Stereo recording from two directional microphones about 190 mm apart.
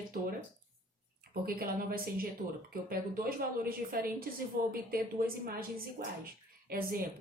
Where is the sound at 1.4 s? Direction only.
50° right (ahead or behind).